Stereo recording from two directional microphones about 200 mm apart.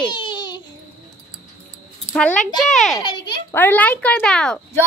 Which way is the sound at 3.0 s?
20° left (ahead or behind).